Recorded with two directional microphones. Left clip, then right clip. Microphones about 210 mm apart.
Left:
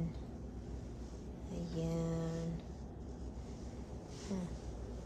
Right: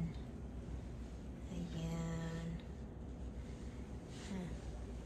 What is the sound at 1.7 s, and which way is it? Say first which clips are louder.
Speech: left 8 dB; 30° left (ahead or behind).